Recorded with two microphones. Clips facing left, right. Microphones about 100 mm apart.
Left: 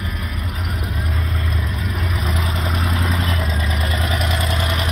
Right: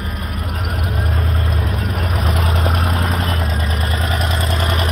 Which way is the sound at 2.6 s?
50° right (ahead or behind).